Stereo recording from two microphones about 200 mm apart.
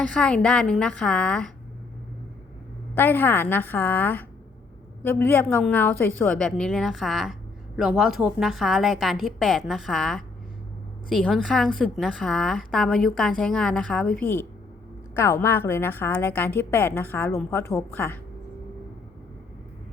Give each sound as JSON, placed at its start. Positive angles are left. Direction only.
{"t": 0.1, "sound": "a woman's voice", "side_deg": 5}
{"t": 2.9, "sound": "a woman's voice", "side_deg": 10}